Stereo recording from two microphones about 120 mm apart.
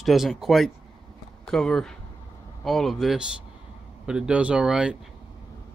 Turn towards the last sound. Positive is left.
turn(degrees=-5)  # may be behind; listen again after turning